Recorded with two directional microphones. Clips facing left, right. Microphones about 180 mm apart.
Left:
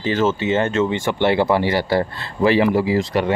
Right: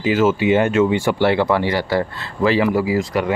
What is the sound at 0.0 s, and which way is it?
Speech, 10° right (ahead or behind).